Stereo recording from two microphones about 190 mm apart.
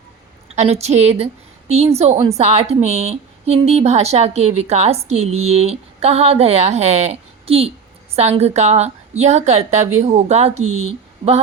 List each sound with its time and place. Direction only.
0.4 s a woman's voice: 35° right (ahead or behind)